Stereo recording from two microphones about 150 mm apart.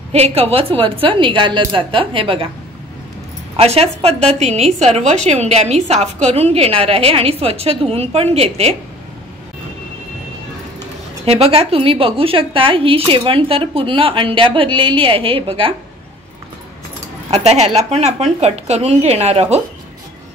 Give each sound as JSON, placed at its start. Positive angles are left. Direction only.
{"t": 0.1, "sound": "speech", "side_deg": -45}
{"t": 3.5, "sound": "a woman's voice", "side_deg": -45}
{"t": 11.2, "sound": "speech", "side_deg": -45}
{"t": 17.3, "sound": "a woman's voice", "side_deg": -45}